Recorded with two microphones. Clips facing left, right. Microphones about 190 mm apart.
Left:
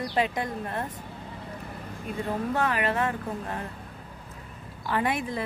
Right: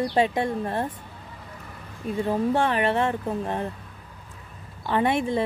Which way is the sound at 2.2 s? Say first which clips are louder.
Right 5 dB; 30° right (ahead or behind).